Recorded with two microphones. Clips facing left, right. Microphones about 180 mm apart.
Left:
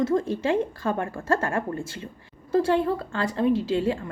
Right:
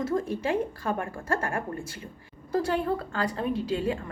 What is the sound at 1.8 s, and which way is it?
A woman's voice, 25° left (ahead or behind).